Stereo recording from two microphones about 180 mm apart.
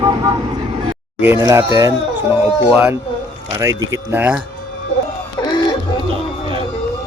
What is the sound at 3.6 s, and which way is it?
Speech, 15° right (ahead or behind).